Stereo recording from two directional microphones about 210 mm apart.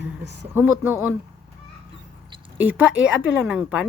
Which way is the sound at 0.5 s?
10° right (ahead or behind).